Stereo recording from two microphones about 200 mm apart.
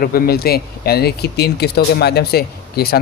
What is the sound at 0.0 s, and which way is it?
Speech, 50° left (ahead or behind).